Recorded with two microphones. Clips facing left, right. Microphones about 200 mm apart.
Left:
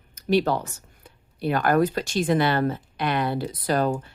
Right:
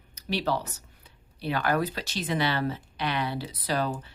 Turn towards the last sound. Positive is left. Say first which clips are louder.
# left 6 dB
turn(degrees=50)  # may be behind; listen again after turning